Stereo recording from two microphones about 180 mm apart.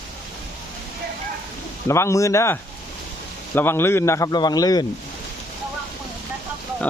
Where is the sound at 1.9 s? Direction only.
15° left (ahead or behind).